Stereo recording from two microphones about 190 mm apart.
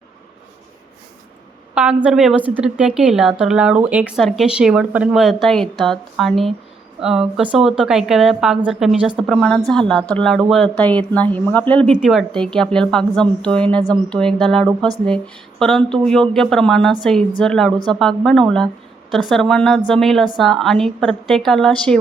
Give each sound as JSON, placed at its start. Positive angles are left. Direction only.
{"t": 1.7, "sound": "a woman's voice", "side_deg": -5}